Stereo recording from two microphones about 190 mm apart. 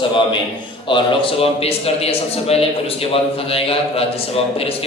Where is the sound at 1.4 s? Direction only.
30° left (ahead or behind).